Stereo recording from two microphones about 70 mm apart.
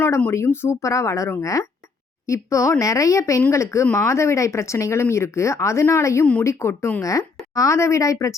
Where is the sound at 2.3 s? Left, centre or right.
Left.